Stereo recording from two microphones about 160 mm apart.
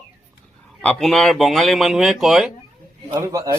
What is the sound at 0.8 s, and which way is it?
A man's voice, centre (ahead or behind).